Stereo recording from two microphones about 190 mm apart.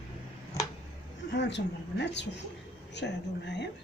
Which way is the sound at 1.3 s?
65° left (ahead or behind).